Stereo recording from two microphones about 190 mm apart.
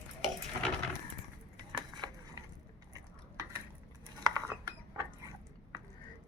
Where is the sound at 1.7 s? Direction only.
25° right (ahead or behind).